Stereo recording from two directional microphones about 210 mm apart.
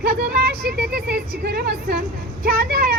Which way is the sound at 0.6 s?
45° right (ahead or behind).